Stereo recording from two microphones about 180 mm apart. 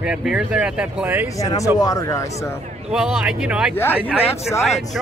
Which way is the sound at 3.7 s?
10° left (ahead or behind).